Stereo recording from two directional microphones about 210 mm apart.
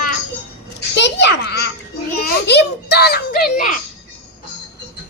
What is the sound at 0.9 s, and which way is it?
A child's voice, 55° left (ahead or behind).